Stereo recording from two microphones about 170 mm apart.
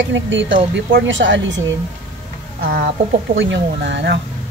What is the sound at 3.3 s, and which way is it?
Speech, 90° right.